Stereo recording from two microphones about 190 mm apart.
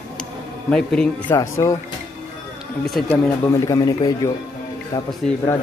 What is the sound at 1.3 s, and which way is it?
Speech, 15° left (ahead or behind).